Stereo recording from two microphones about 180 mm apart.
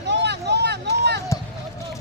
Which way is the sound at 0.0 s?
70° right (ahead or behind).